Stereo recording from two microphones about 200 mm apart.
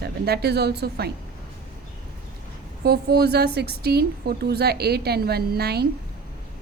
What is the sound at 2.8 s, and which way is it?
A woman's voice, 55° right (ahead or behind).